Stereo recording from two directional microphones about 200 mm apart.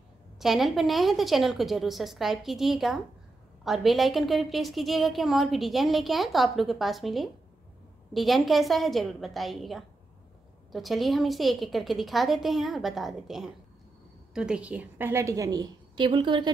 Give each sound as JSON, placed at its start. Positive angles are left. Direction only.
{"t": 0.4, "sound": "a woman's voice", "side_deg": 0}